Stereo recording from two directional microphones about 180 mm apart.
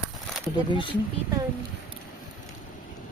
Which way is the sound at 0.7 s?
30° left (ahead or behind).